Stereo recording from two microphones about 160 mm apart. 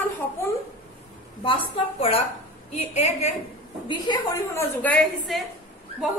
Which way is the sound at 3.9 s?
30° left (ahead or behind).